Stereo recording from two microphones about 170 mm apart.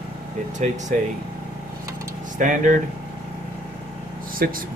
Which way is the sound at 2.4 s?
50° right (ahead or behind).